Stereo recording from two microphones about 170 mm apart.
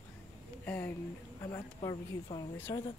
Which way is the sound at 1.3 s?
20° left (ahead or behind).